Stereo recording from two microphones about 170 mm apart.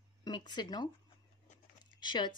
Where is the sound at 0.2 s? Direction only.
25° left (ahead or behind).